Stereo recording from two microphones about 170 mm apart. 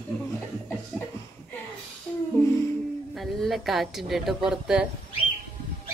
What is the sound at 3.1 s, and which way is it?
A woman's voice, centre (ahead or behind).